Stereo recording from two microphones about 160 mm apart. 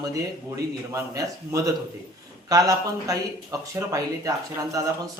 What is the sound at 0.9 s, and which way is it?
Speech, 20° right (ahead or behind).